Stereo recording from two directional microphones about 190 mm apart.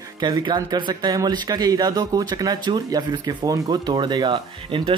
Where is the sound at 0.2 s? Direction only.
20° right (ahead or behind).